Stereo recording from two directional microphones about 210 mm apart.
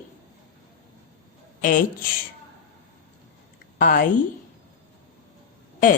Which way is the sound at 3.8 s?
40° left (ahead or behind).